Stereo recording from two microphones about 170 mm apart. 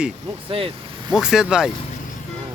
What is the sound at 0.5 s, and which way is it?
Speech, 30° right (ahead or behind).